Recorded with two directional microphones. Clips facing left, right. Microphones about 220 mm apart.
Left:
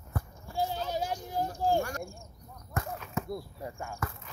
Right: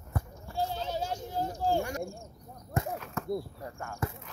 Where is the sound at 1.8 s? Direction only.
20° right (ahead or behind).